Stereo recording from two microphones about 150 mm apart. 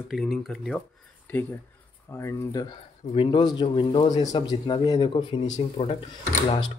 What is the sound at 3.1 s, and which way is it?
Speech, 35° left (ahead or behind).